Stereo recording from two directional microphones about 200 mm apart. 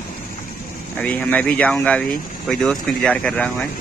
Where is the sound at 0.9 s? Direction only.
5° left (ahead or behind).